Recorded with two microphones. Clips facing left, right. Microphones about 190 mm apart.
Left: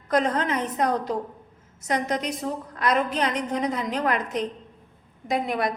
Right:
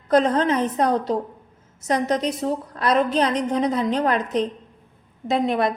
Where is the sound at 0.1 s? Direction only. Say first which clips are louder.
Right 5 dB; 30° right (ahead or behind).